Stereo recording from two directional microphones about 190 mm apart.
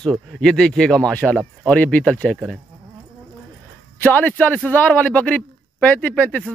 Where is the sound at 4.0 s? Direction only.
10° left (ahead or behind).